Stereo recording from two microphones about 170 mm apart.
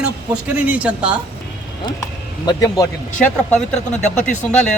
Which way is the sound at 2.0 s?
20° left (ahead or behind).